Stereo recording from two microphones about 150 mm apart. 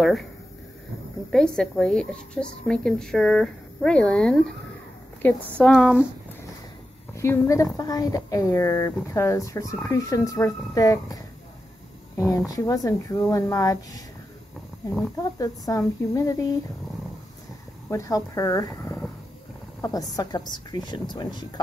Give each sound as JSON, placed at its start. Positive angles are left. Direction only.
{"t": 0.0, "sound": "speech", "side_deg": 0}
{"t": 1.3, "sound": "speech", "side_deg": 5}
{"t": 5.6, "sound": "speech", "side_deg": 0}
{"t": 7.2, "sound": "a woman's voice", "side_deg": 20}
{"t": 15.3, "sound": "a woman's voice", "side_deg": 25}
{"t": 17.8, "sound": "a woman's voice", "side_deg": 20}